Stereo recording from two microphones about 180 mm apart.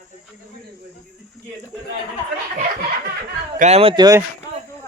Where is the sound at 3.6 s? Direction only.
35° right (ahead or behind).